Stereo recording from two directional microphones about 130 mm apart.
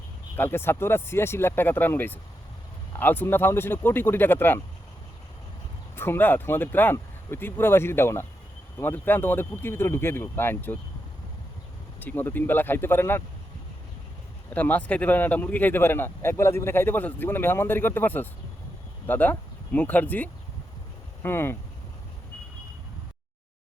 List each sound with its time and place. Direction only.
0.3 s speech: 15° left (ahead or behind)
6.0 s speech: 15° left (ahead or behind)
11.9 s speech: 15° left (ahead or behind)
14.5 s speech: 10° left (ahead or behind)